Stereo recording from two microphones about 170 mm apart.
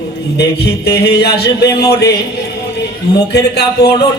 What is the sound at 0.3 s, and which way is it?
Speech, 75° left (ahead or behind).